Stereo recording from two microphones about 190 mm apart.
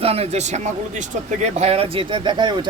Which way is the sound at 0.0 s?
30° right (ahead or behind).